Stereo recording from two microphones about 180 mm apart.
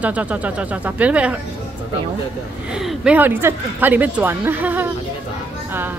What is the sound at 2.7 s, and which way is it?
A woman's voice, 5° right (ahead or behind).